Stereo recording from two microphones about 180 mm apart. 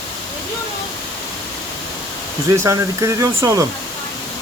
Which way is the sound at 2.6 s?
15° right (ahead or behind).